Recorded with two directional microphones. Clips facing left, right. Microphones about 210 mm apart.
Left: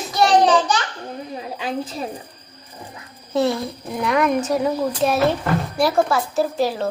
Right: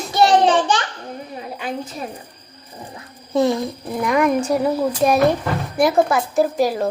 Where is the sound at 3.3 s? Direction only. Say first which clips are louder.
Right 2 dB; 15° right (ahead or behind).